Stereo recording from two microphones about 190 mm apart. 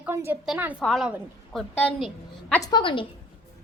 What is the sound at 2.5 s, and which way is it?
Speech, 20° left (ahead or behind).